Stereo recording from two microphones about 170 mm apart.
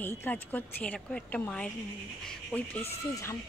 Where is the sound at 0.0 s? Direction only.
10° left (ahead or behind).